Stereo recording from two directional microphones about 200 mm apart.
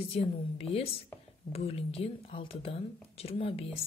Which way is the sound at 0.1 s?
30° left (ahead or behind).